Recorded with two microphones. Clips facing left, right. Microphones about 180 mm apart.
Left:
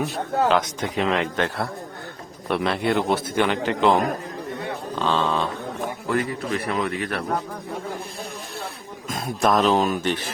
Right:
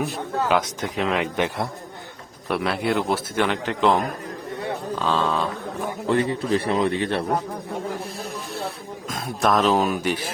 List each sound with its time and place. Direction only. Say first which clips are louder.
0.8 s a man's voice: left 1 dB; centre (ahead or behind)
1.4 s a man's voice: right 1 dB; 15° right (ahead or behind)
2.5 s a man's voice: left 1 dB; 5° right (ahead or behind)
6.1 s a man's voice: right 4 dB; 25° right (ahead or behind)
9.0 s a man's voice: left 1 dB; centre (ahead or behind)